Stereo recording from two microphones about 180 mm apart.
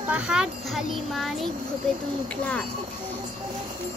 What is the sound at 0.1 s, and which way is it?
A child's voice, 5° right (ahead or behind).